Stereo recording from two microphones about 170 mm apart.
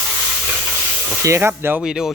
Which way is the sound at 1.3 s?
15° right (ahead or behind).